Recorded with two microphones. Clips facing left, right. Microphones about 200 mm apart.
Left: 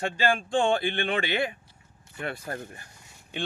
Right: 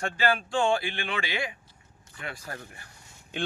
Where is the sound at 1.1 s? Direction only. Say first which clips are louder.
Left 3 dB; 55° left (ahead or behind).